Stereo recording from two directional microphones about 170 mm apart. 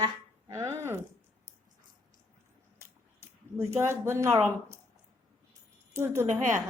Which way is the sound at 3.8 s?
15° right (ahead or behind).